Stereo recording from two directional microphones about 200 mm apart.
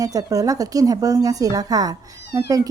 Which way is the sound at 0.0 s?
15° right (ahead or behind).